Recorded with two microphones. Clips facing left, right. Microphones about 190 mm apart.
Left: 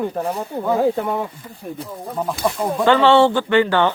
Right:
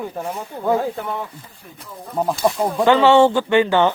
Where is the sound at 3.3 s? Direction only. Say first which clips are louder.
Even; 20° right (ahead or behind).